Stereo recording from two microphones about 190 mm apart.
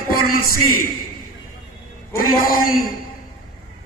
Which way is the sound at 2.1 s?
50° left (ahead or behind).